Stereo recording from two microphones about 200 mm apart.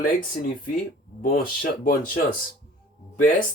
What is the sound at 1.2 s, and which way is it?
Speech, 45° left (ahead or behind).